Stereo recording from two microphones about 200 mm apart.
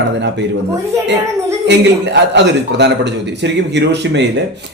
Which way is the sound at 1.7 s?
60° right (ahead or behind).